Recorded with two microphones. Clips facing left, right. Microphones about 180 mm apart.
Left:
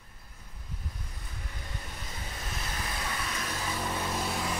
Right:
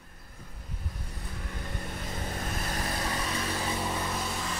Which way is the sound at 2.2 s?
45° right (ahead or behind).